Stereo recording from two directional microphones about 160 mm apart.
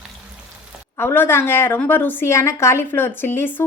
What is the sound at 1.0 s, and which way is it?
A woman's voice, 15° left (ahead or behind).